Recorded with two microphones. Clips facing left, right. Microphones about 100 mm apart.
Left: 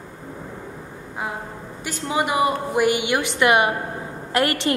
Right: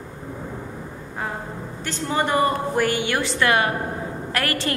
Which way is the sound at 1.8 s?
10° left (ahead or behind).